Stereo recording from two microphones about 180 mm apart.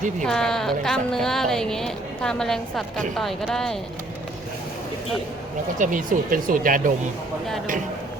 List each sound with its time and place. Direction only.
0.3 s speech: 5° left (ahead or behind)
5.8 s speech: 50° right (ahead or behind)